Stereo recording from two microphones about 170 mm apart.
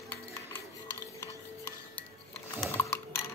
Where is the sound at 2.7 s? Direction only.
15° left (ahead or behind).